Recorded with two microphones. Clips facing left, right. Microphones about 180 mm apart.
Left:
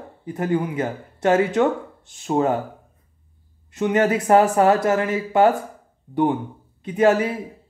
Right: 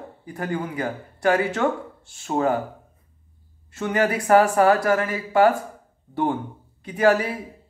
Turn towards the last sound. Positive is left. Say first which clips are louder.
# left 2 dB
turn(degrees=20)  # may be behind; listen again after turning